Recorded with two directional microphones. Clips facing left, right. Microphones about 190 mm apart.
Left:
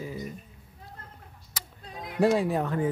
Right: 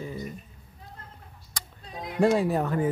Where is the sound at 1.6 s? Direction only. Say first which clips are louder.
Right 1 dB; 5° left (ahead or behind).